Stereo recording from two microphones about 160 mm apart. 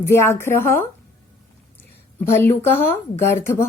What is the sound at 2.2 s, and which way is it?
Speech, 15° left (ahead or behind).